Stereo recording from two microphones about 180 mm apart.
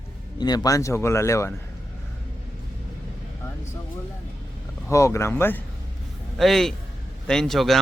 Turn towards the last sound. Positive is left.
turn(degrees=0)  # may be behind; listen again after turning